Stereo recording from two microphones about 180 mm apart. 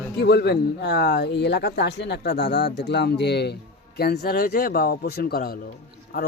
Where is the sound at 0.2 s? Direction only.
65° left (ahead or behind).